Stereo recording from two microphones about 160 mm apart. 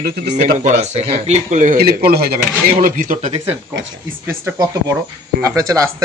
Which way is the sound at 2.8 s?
55° right (ahead or behind).